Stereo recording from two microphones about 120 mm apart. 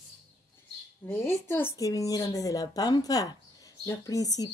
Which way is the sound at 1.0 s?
20° left (ahead or behind).